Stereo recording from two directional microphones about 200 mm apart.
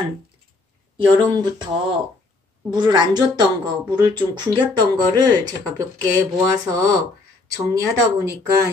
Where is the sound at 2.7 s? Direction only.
20° right (ahead or behind).